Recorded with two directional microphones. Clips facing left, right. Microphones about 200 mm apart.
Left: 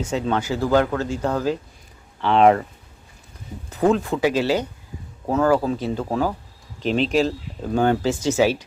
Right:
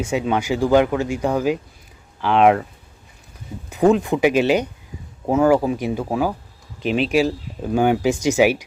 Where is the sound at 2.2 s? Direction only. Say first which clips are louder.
Even; centre (ahead or behind).